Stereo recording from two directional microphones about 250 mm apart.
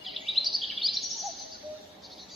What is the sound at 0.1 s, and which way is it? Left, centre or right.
Bird vocalization, centre.